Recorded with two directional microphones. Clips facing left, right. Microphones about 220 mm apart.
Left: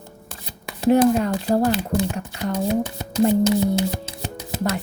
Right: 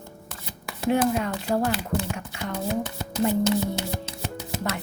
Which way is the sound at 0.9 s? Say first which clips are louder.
Left 7 dB; 35° left (ahead or behind).